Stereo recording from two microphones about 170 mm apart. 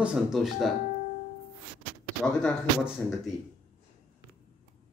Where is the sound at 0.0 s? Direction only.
5° right (ahead or behind).